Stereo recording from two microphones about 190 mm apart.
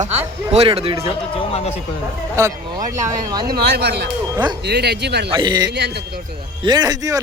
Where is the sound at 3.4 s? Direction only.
55° right (ahead or behind).